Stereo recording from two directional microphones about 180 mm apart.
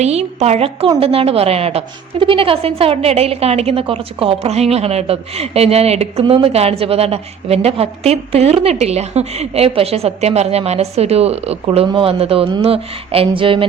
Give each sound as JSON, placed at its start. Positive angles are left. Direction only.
{"t": 0.0, "sound": "a woman's voice", "side_deg": -35}